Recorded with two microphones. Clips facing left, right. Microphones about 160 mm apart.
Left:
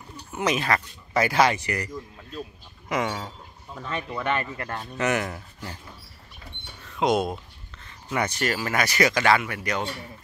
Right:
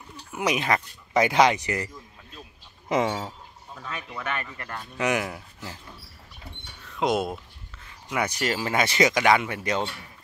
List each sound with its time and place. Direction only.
0.3 s speech: 10° right (ahead or behind)
2.9 s speech: 30° right (ahead or behind)
3.7 s speech: 40° left (ahead or behind)
4.9 s speech: 10° right (ahead or behind)
6.9 s speech: centre (ahead or behind); by 9.8 s 25° right (ahead or behind)